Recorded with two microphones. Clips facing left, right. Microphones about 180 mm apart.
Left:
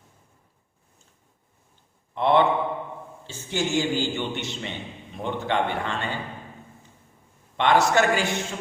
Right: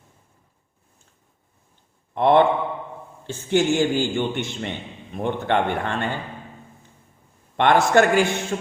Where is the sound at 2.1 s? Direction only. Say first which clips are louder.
Right 3 dB; 50° right (ahead or behind).